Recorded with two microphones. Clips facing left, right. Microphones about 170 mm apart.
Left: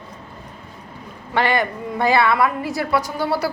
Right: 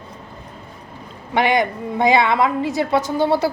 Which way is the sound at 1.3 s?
15° right (ahead or behind).